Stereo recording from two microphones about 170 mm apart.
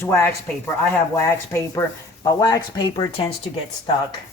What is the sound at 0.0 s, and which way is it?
Speech, 15° left (ahead or behind).